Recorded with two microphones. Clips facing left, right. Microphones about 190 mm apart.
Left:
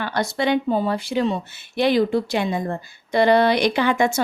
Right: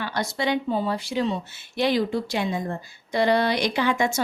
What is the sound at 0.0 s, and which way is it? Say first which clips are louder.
Speech: left 4 dB; 60° left (ahead or behind).